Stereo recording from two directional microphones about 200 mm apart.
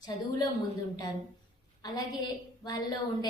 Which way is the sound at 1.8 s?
20° left (ahead or behind).